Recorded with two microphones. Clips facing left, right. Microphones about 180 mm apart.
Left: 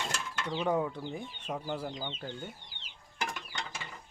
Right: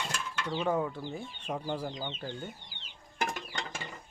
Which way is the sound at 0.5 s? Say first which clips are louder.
Even; 15° left (ahead or behind).